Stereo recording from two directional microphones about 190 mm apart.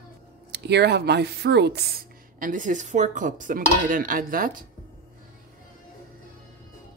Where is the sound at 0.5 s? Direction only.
60° right (ahead or behind).